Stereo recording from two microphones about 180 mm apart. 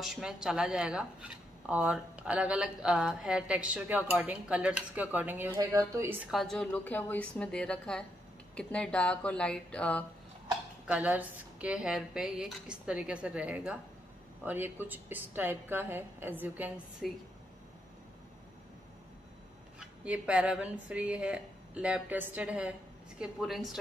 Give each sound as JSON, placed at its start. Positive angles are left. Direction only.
{"t": 0.0, "sound": "speech", "side_deg": -5}
{"t": 6.3, "sound": "speech", "side_deg": 0}
{"t": 10.9, "sound": "speech", "side_deg": -10}
{"t": 19.8, "sound": "speech", "side_deg": -5}